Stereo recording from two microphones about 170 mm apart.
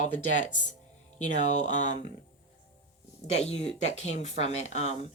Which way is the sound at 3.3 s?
40° left (ahead or behind).